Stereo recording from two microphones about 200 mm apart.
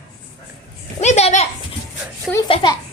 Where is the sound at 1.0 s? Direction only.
35° left (ahead or behind).